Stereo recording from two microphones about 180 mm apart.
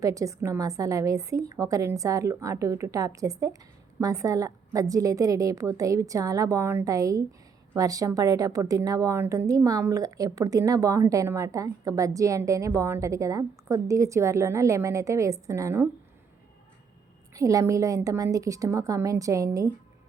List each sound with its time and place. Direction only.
0.0 s a woman's voice: 20° right (ahead or behind)
17.3 s a woman's voice: 20° right (ahead or behind)